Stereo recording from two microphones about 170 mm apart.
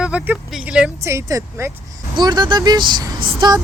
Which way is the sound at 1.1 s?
20° right (ahead or behind).